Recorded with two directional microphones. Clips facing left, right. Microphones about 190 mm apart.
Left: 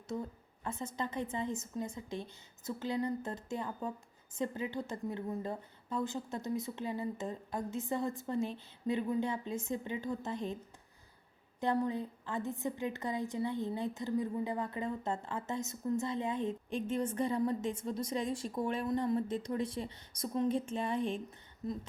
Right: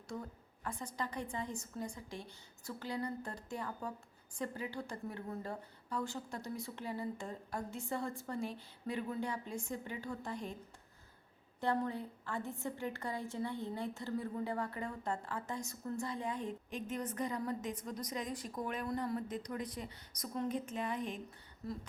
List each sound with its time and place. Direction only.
0.1 s a woman's voice: 20° left (ahead or behind)
11.6 s a woman's voice: 15° left (ahead or behind)